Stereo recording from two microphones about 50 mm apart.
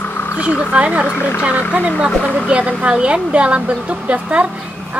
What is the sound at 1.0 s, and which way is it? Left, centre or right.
Speech, left.